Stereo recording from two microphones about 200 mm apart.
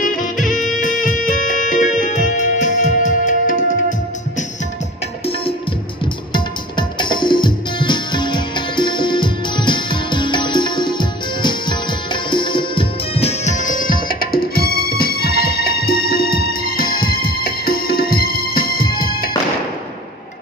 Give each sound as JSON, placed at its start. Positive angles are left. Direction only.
{"t": 0.0, "sound": "music", "side_deg": 40}
{"t": 6.3, "sound": "music", "side_deg": 20}